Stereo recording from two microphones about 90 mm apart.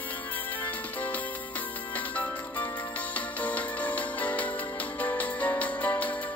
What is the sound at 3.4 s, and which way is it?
Music, 15° left (ahead or behind).